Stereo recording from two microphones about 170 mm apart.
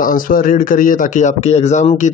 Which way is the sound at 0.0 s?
55° left (ahead or behind).